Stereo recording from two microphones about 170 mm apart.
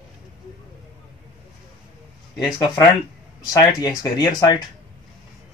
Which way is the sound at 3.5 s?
20° left (ahead or behind).